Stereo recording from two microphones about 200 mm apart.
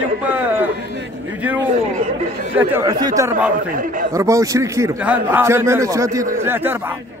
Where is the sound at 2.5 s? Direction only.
15° right (ahead or behind).